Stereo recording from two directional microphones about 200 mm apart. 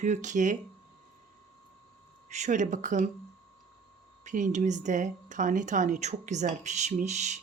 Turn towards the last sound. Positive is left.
turn(degrees=-35)  # may be behind; listen again after turning